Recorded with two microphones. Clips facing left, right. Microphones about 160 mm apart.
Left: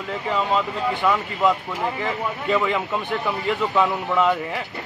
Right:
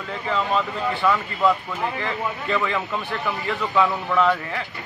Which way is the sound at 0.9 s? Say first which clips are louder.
Right 1 dB; 20° left (ahead or behind).